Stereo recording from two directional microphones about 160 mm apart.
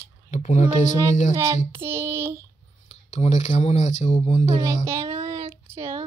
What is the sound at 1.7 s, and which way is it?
Speech, 15° right (ahead or behind).